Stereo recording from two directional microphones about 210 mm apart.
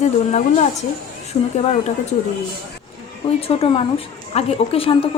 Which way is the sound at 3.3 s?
30° left (ahead or behind).